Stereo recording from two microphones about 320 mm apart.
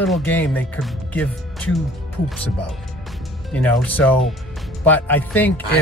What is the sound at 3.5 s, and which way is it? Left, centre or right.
Speech, centre.